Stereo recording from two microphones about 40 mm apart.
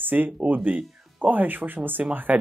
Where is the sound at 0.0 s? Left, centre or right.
Right.